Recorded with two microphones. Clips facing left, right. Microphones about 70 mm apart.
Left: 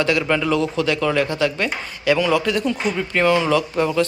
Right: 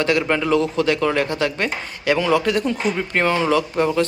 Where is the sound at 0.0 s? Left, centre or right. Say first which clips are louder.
Even; right.